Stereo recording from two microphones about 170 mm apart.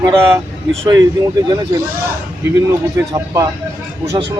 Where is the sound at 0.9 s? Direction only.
25° right (ahead or behind).